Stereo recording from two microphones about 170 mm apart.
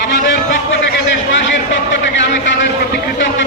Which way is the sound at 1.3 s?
90° left.